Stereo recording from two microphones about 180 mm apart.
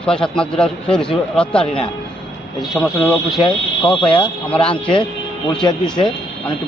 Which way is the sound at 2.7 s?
5° left (ahead or behind).